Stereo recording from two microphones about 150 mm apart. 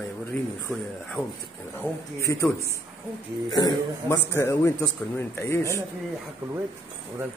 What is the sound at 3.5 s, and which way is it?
A man's voice, 25° left (ahead or behind).